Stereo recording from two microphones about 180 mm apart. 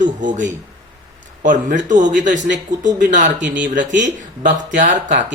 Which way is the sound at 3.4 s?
10° right (ahead or behind).